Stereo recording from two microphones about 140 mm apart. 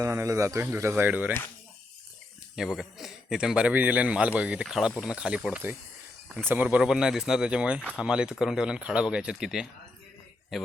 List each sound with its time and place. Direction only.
0.0 s speech: 20° right (ahead or behind)
2.6 s a man's voice: centre (ahead or behind)